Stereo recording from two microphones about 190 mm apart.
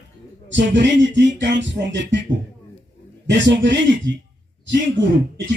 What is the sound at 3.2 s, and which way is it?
Music, 70° right (ahead or behind).